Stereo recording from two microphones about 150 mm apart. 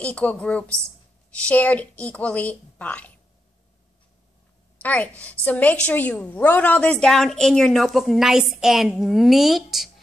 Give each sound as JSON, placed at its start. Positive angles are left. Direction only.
{"t": 0.0, "sound": "a woman's voice", "side_deg": 10}
{"t": 4.7, "sound": "a woman's voice", "side_deg": 10}